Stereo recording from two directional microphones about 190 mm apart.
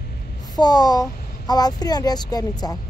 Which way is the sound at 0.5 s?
20° left (ahead or behind).